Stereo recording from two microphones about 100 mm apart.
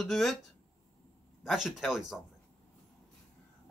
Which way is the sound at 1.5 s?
5° right (ahead or behind).